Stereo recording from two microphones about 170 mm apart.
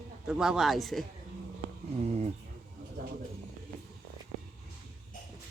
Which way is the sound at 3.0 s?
60° right (ahead or behind).